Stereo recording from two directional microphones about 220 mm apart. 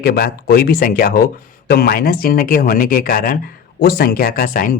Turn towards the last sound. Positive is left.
turn(degrees=40)  # may be behind; listen again after turning